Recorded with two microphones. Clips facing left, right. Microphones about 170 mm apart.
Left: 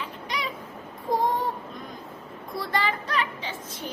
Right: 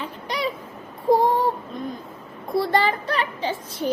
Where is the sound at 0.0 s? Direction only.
35° right (ahead or behind).